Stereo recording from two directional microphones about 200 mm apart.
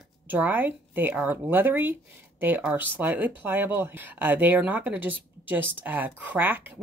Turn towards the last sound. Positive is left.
turn(degrees=-10)  # may be behind; listen again after turning